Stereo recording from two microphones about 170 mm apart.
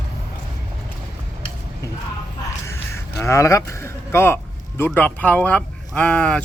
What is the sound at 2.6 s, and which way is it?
A man's voice, 15° left (ahead or behind).